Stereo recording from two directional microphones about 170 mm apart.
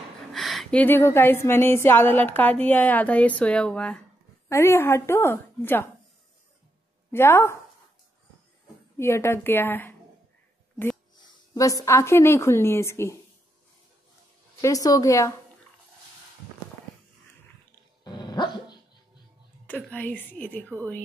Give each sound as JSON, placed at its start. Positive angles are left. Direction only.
{"t": 0.3, "sound": "a woman's voice", "side_deg": 0}
{"t": 7.1, "sound": "a woman's voice", "side_deg": 15}
{"t": 8.9, "sound": "a woman's voice", "side_deg": 15}
{"t": 11.1, "sound": "a woman's voice", "side_deg": 20}
{"t": 14.6, "sound": "a woman's voice", "side_deg": 20}
{"t": 18.0, "sound": "dog", "side_deg": 25}
{"t": 19.6, "sound": "a woman's voice", "side_deg": 10}